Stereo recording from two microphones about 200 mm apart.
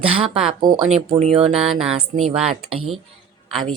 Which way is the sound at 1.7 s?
Centre (ahead or behind).